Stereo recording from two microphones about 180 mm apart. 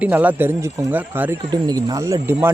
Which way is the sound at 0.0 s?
10° right (ahead or behind).